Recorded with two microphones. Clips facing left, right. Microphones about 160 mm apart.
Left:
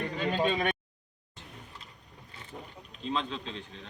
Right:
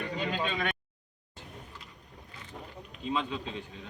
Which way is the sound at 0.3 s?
25° left (ahead or behind).